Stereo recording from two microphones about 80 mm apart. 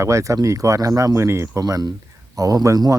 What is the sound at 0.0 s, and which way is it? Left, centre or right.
Speech, right.